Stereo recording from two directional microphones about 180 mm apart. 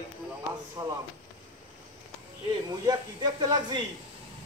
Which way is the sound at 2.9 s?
25° right (ahead or behind).